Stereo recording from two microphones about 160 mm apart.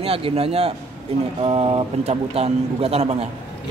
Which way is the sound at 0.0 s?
35° right (ahead or behind).